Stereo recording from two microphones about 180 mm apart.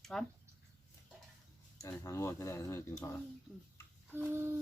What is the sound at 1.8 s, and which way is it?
Speech, 15° left (ahead or behind).